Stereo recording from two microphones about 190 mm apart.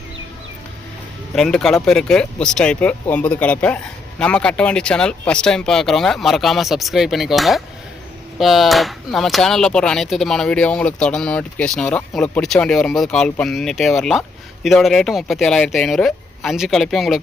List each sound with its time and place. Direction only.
1.4 s speech: 5° left (ahead or behind)